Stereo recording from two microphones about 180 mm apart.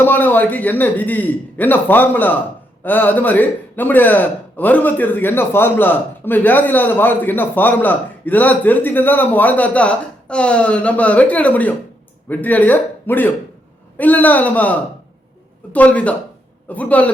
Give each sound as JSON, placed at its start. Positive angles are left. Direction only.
{"t": 0.0, "sound": "a man's voice", "side_deg": 10}